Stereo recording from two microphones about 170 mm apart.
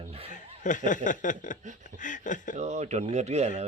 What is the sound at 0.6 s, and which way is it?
Speech, 50° left (ahead or behind).